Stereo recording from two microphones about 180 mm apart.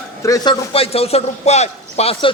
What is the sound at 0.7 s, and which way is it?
A man's voice, 35° left (ahead or behind).